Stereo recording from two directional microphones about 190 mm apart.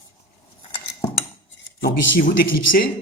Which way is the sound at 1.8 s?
75° left (ahead or behind).